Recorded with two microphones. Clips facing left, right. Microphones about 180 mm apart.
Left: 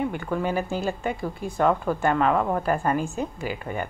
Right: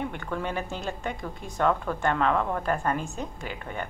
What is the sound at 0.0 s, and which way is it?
A woman's voice, 5° left (ahead or behind).